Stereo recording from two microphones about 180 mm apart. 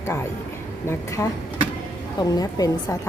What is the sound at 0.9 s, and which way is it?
Speech, 15° left (ahead or behind).